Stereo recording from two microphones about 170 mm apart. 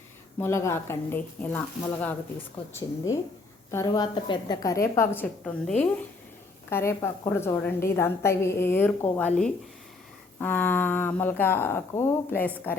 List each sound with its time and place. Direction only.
0.3 s a woman's voice: 15° left (ahead or behind)